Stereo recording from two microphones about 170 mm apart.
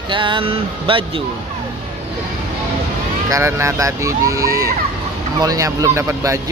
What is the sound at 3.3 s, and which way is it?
Speech, 15° right (ahead or behind).